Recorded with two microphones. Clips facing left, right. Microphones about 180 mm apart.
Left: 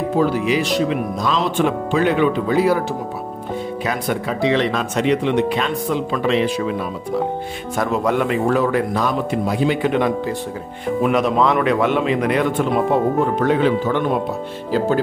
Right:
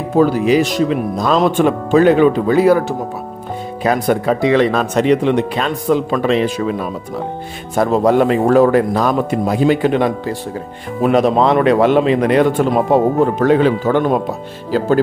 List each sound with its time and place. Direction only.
0.2 s speech: 45° right (ahead or behind)
3.8 s speech: 40° right (ahead or behind)
7.7 s speech: 35° right (ahead or behind)